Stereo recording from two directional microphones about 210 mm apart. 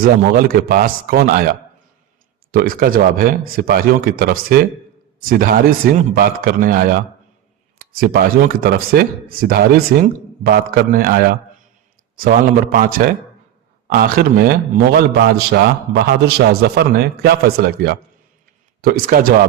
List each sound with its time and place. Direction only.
0.0 s a man's voice: 45° right (ahead or behind)